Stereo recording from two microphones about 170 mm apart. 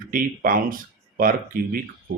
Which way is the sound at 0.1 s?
55° right (ahead or behind).